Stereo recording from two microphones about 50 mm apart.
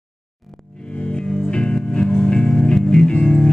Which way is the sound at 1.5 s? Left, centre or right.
Centre.